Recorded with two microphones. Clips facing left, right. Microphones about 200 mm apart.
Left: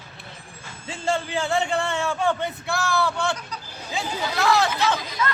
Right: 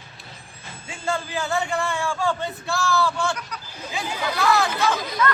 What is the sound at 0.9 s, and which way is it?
A man's voice, 25° left (ahead or behind).